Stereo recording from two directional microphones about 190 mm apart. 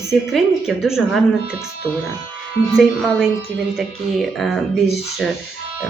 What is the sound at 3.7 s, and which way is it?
Speech, centre (ahead or behind).